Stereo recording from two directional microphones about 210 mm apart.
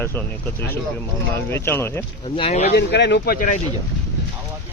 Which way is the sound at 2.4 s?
30° left (ahead or behind).